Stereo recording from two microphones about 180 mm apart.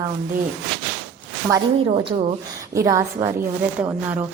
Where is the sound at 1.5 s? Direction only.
20° right (ahead or behind).